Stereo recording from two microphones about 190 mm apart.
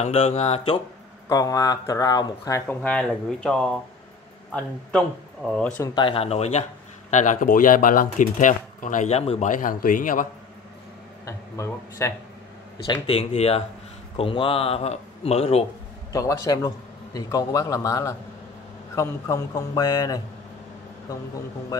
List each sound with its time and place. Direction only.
0.0 s speech: 35° left (ahead or behind)
1.3 s speech: 20° left (ahead or behind); by 5.7 s centre (ahead or behind)
5.9 s speech: 30° left (ahead or behind); by 10.2 s 45° left (ahead or behind)
11.2 s speech: 15° left (ahead or behind); by 15.6 s 30° left (ahead or behind)
16.1 s a man's voice: 20° left (ahead or behind)